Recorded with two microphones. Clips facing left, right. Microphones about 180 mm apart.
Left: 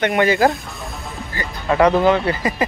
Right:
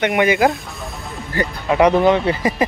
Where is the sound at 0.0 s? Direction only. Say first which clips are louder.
Even; 15° right (ahead or behind).